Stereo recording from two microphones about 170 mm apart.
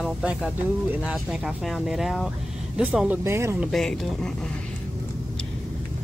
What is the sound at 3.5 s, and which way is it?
Speech, centre (ahead or behind).